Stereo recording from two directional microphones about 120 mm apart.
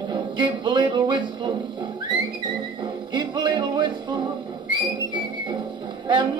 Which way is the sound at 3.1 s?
40° right (ahead or behind).